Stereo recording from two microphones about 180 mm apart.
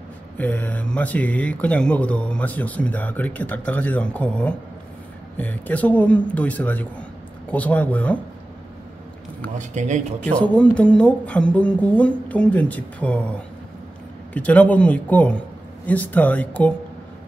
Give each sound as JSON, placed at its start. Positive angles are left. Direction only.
{"t": 0.4, "sound": "speech", "side_deg": 10}
{"t": 9.6, "sound": "speech", "side_deg": -40}
{"t": 10.2, "sound": "speech", "side_deg": 5}
{"t": 14.3, "sound": "speech", "side_deg": 10}